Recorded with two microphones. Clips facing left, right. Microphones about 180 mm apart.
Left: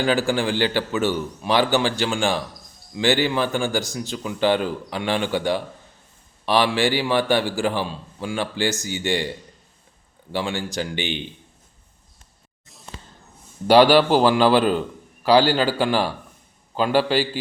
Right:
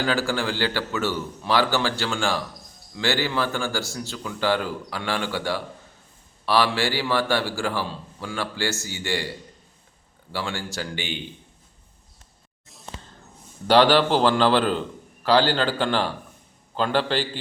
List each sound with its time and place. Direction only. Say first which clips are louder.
0.0 s a man's voice: left 4 dB; 15° left (ahead or behind)
10.3 s speech: left 4 dB; 20° left (ahead or behind)
13.7 s a man's voice: left 3 dB; 10° left (ahead or behind)